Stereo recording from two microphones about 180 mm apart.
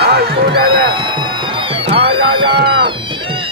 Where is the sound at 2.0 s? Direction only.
60° right (ahead or behind).